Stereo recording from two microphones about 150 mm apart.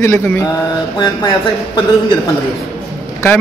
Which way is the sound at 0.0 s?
15° left (ahead or behind).